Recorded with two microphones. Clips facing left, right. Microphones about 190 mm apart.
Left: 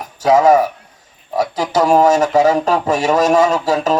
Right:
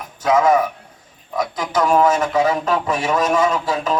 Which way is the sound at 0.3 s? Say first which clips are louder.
Left 4 dB; 40° left (ahead or behind).